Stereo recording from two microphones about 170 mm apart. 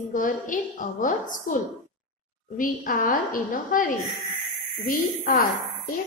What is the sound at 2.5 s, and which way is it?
A woman's voice, 50° left (ahead or behind).